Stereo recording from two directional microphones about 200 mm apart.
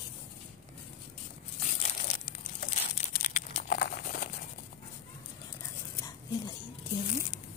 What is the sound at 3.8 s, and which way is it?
Crumpling, 45° left (ahead or behind).